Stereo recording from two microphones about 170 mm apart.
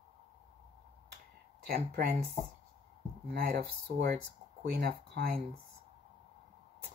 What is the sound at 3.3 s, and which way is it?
Speech, 70° right (ahead or behind).